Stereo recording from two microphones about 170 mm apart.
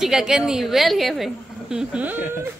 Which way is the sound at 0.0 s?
5° right (ahead or behind).